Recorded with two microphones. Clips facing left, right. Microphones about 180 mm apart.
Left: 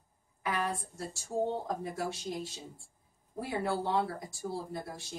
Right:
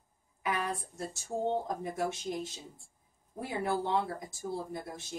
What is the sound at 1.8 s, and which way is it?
A woman's voice, 20° right (ahead or behind).